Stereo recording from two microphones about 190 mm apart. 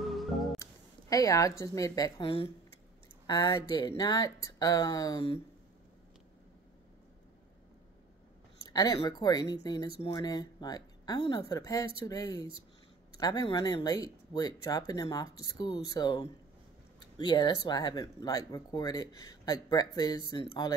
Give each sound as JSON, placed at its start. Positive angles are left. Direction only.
{"t": 0.0, "sound": "music", "side_deg": 0}
{"t": 1.1, "sound": "a woman's voice", "side_deg": 20}
{"t": 8.6, "sound": "speech", "side_deg": 20}